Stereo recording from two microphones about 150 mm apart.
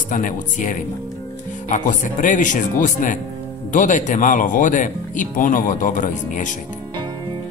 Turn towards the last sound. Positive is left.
turn(degrees=60)  # may be behind; listen again after turning